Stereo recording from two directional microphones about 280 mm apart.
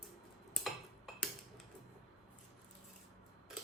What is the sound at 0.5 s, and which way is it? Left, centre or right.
Tick-tock, centre.